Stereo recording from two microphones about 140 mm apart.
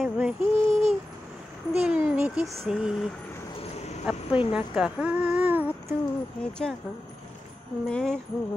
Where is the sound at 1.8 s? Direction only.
10° right (ahead or behind).